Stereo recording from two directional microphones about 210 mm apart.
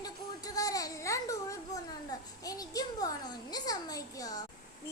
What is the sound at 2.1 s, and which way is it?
Child singing, 15° left (ahead or behind).